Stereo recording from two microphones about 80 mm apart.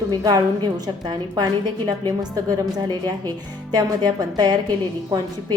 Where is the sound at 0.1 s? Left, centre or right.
Right.